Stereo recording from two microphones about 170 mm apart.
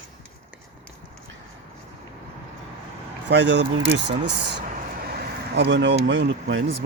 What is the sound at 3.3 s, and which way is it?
Speech, 90° right.